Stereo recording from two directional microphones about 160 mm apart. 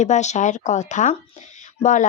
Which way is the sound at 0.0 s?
45° left (ahead or behind).